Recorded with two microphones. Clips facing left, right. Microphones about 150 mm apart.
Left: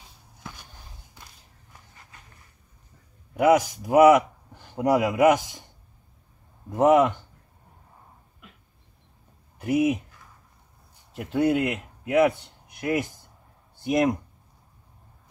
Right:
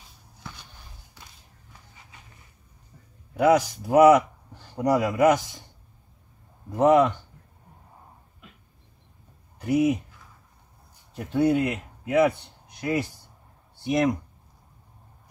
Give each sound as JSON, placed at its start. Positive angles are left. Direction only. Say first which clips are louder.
{"t": 3.3, "sound": "speech", "louder": "even", "side_deg": 5}
{"t": 6.7, "sound": "speech", "louder": "even", "side_deg": 15}
{"t": 9.6, "sound": "speech", "louder": "right 1 dB", "side_deg": 5}
{"t": 11.1, "sound": "speech", "louder": "right 1 dB", "side_deg": 5}